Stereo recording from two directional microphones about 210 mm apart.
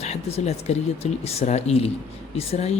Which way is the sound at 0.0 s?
30° left (ahead or behind).